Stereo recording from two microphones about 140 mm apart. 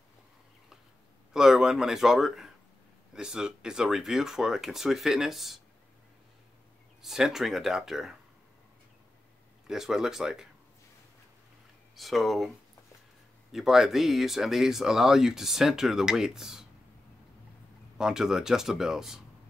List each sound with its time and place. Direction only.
1.3 s speech: 5° right (ahead or behind)
7.0 s speech: 5° right (ahead or behind)
9.7 s speech: 5° right (ahead or behind)
11.9 s speech: centre (ahead or behind)
17.9 s speech: 5° right (ahead or behind)